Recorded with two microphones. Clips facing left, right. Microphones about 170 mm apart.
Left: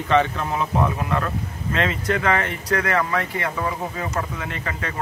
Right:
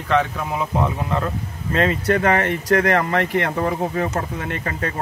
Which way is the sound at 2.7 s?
60° right (ahead or behind).